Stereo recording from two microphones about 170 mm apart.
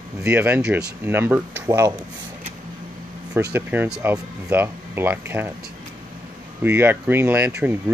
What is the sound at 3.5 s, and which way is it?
Speech, 10° right (ahead or behind).